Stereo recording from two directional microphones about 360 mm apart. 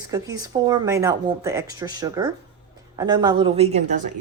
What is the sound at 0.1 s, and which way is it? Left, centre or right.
Speech, centre.